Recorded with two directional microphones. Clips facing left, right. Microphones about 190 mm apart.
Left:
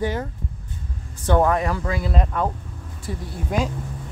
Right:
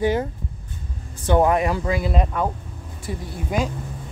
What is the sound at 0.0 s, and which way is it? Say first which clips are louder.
Speech: right 4 dB; 15° right (ahead or behind).